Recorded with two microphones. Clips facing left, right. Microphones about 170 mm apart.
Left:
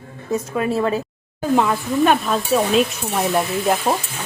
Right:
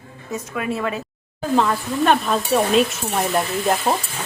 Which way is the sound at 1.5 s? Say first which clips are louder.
Left 1 dB; 5° left (ahead or behind).